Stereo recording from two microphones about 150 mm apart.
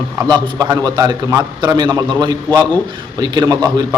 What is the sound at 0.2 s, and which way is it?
A man's voice, 30° right (ahead or behind).